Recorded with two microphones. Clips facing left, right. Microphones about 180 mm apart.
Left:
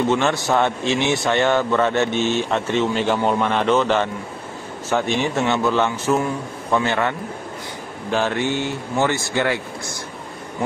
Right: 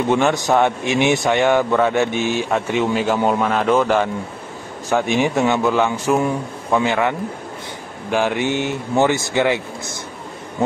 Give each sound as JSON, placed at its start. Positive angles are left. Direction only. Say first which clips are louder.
{"t": 0.1, "sound": "speech", "louder": "right 3 dB", "side_deg": -15}